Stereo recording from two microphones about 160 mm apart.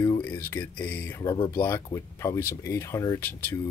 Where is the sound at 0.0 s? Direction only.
15° left (ahead or behind).